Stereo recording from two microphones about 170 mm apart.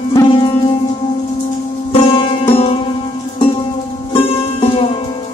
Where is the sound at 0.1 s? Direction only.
25° left (ahead or behind).